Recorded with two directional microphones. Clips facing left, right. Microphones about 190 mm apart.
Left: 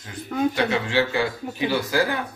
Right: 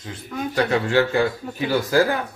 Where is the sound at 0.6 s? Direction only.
45° right (ahead or behind).